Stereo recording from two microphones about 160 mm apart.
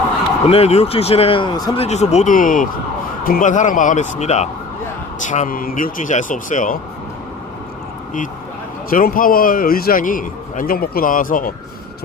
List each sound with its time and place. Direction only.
0.5 s a man's voice: 40° left (ahead or behind)
1.7 s a man's voice: 40° left (ahead or behind)
8.9 s a man's voice: 60° left (ahead or behind)